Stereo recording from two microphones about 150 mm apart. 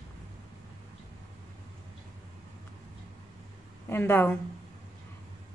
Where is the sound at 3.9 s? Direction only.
15° left (ahead or behind).